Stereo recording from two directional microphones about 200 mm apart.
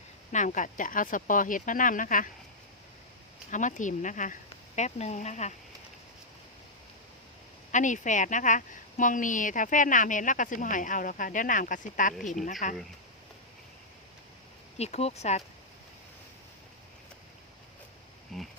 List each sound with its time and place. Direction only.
0.3 s a woman's voice: 40° left (ahead or behind)
3.5 s a woman's voice: 40° left (ahead or behind)
7.7 s a woman's voice: 40° left (ahead or behind)
14.8 s a woman's voice: 30° left (ahead or behind)
18.3 s a sound: centre (ahead or behind)